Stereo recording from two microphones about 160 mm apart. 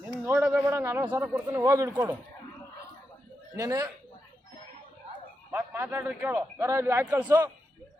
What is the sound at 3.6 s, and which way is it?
Speech, 20° right (ahead or behind).